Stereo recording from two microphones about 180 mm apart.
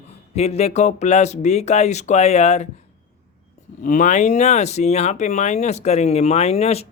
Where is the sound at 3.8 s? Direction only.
45° left (ahead or behind).